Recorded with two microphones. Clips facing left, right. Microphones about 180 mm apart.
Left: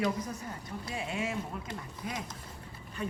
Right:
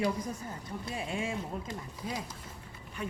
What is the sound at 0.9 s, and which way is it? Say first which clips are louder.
Speech: even; 35° right (ahead or behind).